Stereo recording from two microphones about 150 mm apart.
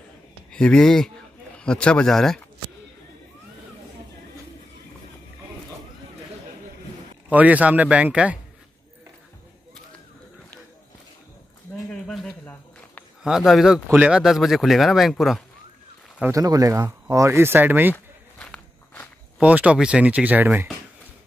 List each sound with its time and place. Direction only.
0.5 s speech: 5° left (ahead or behind)
7.2 s speech: 10° right (ahead or behind)
11.9 s a sound: 5° left (ahead or behind)
13.2 s speech: 5° right (ahead or behind)
16.3 s speech: 25° right (ahead or behind)
17.9 s walk: 10° left (ahead or behind)
19.4 s speech: 10° right (ahead or behind)